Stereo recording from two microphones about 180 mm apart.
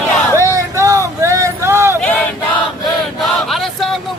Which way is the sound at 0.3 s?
15° right (ahead or behind).